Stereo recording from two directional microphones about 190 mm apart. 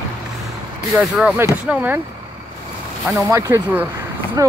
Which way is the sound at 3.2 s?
15° right (ahead or behind).